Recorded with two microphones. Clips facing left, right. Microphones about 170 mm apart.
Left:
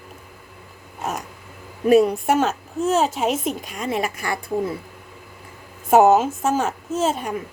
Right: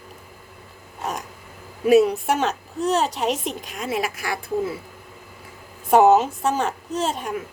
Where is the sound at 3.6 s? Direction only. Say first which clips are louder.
Left 1 dB; centre (ahead or behind).